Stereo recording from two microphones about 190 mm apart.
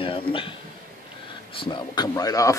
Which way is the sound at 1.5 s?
25° left (ahead or behind).